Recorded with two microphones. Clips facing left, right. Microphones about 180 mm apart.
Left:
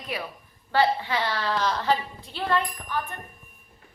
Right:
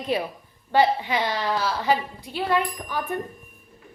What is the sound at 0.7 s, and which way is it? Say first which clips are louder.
A woman's voice: right 3 dB; 15° right (ahead or behind).